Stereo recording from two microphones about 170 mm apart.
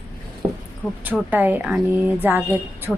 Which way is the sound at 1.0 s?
10° right (ahead or behind).